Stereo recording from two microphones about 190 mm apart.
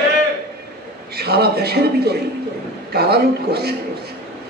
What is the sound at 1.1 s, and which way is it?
A woman's voice, 55° right (ahead or behind).